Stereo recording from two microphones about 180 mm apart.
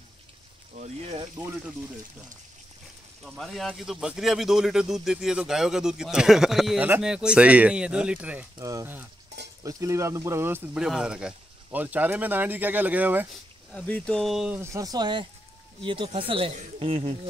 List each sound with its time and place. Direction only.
0.7 s speech: 40° right (ahead or behind)
1.2 s speech: 20° right (ahead or behind)
3.3 s speech: centre (ahead or behind)
8.5 s speech: 20° right (ahead or behind)
13.3 s speech: 5° left (ahead or behind)
14.6 s speech: 15° right (ahead or behind)